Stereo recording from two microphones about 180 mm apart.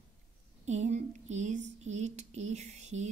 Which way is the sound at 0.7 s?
40° right (ahead or behind).